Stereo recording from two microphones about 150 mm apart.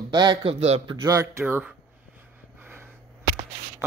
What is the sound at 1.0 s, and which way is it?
Speech, 20° right (ahead or behind).